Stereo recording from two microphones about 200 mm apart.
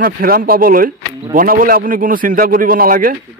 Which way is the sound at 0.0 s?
45° right (ahead or behind).